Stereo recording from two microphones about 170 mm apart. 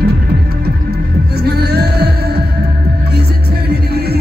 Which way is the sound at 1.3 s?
70° right (ahead or behind).